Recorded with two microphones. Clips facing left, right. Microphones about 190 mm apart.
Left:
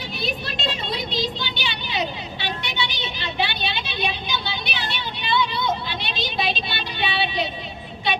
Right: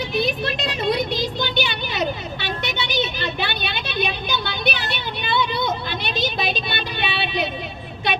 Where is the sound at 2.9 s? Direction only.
50° right (ahead or behind).